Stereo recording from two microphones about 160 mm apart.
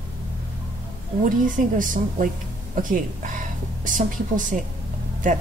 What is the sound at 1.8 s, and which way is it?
A woman's voice, 55° right (ahead or behind).